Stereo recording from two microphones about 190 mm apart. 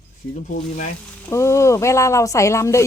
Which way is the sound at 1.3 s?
15° left (ahead or behind).